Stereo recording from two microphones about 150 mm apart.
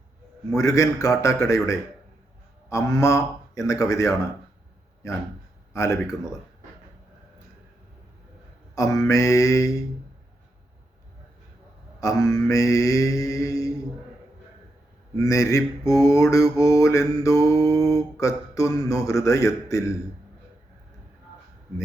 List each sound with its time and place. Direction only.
0.5 s mantra: 20° left (ahead or behind)
5.7 s speech: 20° left (ahead or behind)
8.7 s mantra: 25° left (ahead or behind)
11.9 s mantra: 20° left (ahead or behind)
15.2 s mantra: 20° left (ahead or behind)